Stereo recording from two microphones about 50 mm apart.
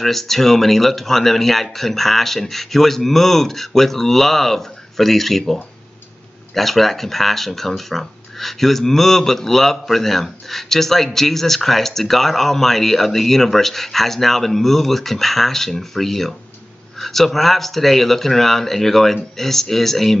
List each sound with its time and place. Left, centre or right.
0.0 s speech: centre